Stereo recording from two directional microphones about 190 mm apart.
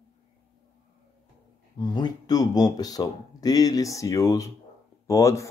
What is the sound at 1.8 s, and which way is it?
Speech, 20° left (ahead or behind).